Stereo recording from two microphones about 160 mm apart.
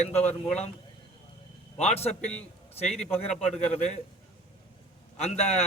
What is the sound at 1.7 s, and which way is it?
Speech, 40° left (ahead or behind).